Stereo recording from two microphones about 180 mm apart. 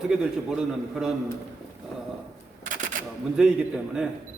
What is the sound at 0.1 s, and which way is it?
A man's voice, 5° right (ahead or behind).